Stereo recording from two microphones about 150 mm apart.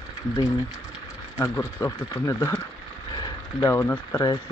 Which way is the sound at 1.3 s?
20° left (ahead or behind).